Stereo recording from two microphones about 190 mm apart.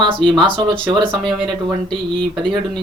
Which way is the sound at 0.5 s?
25° right (ahead or behind).